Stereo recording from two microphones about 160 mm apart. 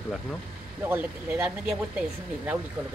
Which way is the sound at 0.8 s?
10° right (ahead or behind).